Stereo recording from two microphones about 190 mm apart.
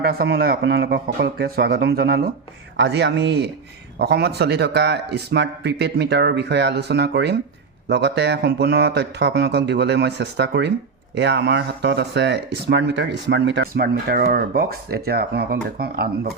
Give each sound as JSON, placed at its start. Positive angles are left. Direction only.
{"t": 0.0, "sound": "speech", "side_deg": -55}